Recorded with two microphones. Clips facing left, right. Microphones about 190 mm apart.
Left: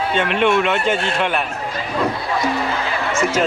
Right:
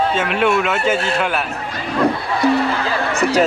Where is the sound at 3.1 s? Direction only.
35° right (ahead or behind).